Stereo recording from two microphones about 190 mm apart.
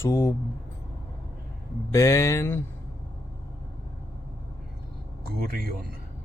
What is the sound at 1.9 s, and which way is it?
Speech, 15° left (ahead or behind).